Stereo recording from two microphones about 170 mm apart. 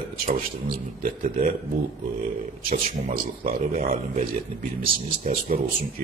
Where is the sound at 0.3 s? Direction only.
55° right (ahead or behind).